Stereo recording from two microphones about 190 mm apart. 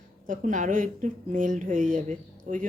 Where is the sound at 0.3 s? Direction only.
40° right (ahead or behind).